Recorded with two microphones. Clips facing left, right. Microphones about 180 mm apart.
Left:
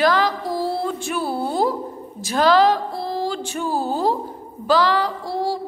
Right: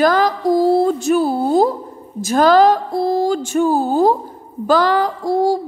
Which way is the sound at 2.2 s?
45° right (ahead or behind).